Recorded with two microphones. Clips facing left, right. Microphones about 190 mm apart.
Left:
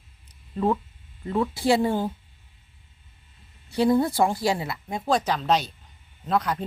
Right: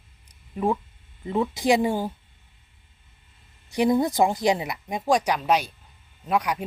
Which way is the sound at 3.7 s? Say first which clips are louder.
Even; 15° right (ahead or behind).